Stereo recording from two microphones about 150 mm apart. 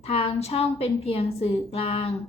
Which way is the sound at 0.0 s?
40° left (ahead or behind).